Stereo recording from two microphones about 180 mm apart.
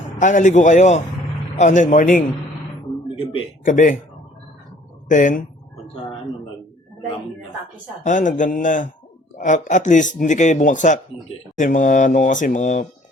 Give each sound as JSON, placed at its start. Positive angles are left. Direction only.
{"t": 0.2, "sound": "a man's voice", "side_deg": 45}
{"t": 3.6, "sound": "a man's voice", "side_deg": 45}
{"t": 5.0, "sound": "a man's voice", "side_deg": 45}
{"t": 8.0, "sound": "a man's voice", "side_deg": 45}